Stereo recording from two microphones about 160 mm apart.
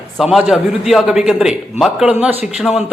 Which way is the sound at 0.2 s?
5° right (ahead or behind).